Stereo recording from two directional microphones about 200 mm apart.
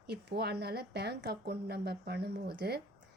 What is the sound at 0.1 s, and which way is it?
A woman's voice, 55° right (ahead or behind).